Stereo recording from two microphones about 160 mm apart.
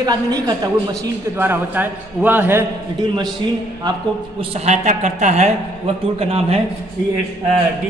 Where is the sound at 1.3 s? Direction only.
15° right (ahead or behind).